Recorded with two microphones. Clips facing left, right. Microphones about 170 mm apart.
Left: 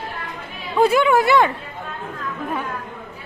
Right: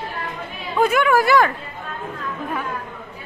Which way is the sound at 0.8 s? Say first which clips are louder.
Left 1 dB; 25° left (ahead or behind).